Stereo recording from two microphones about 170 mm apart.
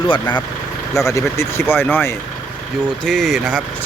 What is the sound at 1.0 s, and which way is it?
Speech, 15° left (ahead or behind).